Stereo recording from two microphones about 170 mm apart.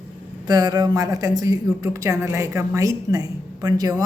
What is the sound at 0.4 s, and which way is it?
Speech, 20° right (ahead or behind).